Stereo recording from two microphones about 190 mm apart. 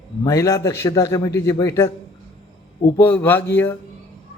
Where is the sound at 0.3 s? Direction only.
15° left (ahead or behind).